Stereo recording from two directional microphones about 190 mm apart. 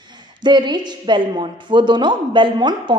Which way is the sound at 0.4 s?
25° right (ahead or behind).